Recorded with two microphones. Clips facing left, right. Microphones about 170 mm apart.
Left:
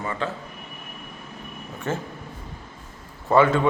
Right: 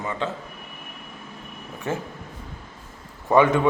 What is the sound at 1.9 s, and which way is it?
Speech, 15° right (ahead or behind).